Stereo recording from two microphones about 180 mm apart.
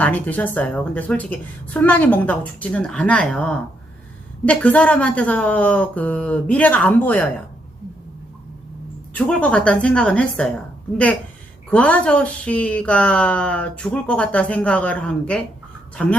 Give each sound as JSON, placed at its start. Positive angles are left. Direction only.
{"t": 0.0, "sound": "speech", "side_deg": 10}
{"t": 9.1, "sound": "a woman's voice", "side_deg": 5}